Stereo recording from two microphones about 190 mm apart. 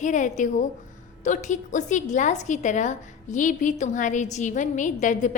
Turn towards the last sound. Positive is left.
turn(degrees=40)  # may be behind; listen again after turning